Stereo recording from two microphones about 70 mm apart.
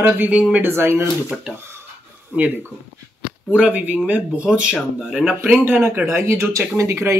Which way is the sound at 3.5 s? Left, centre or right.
Centre.